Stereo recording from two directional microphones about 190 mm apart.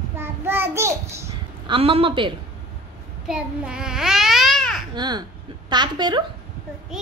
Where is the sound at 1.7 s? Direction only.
30° right (ahead or behind).